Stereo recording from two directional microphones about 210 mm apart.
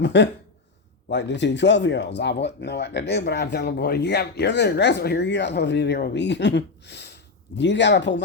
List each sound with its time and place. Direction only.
0.0 s speech: 55° left (ahead or behind)